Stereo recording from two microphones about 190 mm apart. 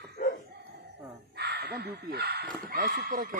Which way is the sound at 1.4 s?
60° right (ahead or behind).